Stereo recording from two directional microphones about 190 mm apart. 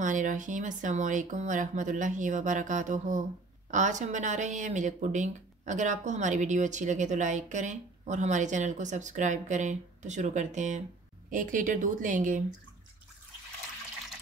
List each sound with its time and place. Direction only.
0.0 s a woman's voice: 40° right (ahead or behind)